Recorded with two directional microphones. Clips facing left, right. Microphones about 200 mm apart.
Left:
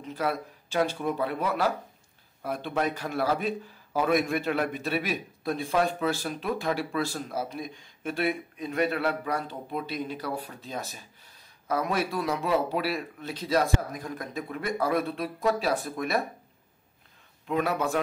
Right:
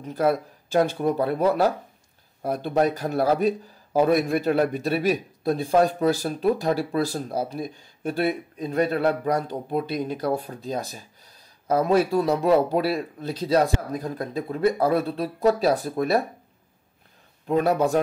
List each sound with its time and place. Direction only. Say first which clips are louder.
0.0 s speech: right 7 dB; 45° right (ahead or behind)
11.7 s speech: right 8 dB; 30° right (ahead or behind)
17.5 s speech: right 6 dB; 35° right (ahead or behind)